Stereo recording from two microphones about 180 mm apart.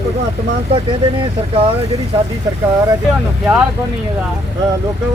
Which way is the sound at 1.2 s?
30° right (ahead or behind).